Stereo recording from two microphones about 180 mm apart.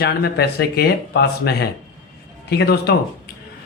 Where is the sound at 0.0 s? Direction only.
65° left (ahead or behind).